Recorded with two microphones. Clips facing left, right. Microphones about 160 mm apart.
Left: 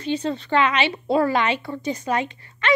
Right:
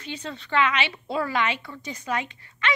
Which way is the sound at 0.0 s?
30° left (ahead or behind).